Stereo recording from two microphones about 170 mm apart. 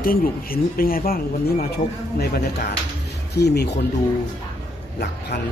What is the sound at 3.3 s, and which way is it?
Speech, 80° left.